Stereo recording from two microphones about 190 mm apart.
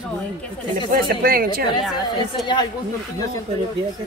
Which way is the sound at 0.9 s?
50° right (ahead or behind).